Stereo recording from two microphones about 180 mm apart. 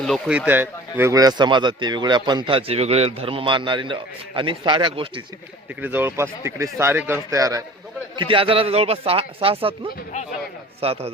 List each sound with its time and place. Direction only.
0.0 s speech: centre (ahead or behind); by 5.2 s 30° right (ahead or behind)
5.8 s speech: 10° right (ahead or behind); by 11.1 s 35° right (ahead or behind)